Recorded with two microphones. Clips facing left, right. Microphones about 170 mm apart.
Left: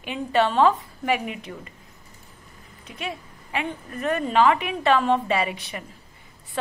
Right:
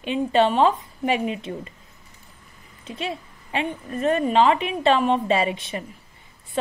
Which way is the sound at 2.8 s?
25° right (ahead or behind).